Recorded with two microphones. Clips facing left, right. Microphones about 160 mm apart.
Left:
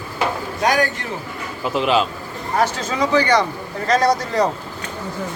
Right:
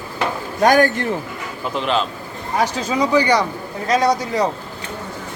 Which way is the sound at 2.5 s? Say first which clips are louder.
Right 1 dB; 10° right (ahead or behind).